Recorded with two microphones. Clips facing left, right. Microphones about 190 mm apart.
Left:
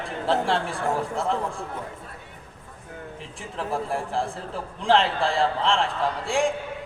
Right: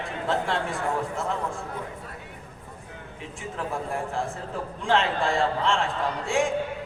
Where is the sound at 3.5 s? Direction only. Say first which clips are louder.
Left 3 dB; 30° left (ahead or behind).